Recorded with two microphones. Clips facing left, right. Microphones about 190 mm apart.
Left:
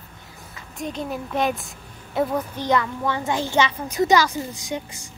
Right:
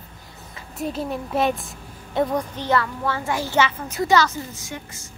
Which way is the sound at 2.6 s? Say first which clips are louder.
Left 1 dB; 15° left (ahead or behind).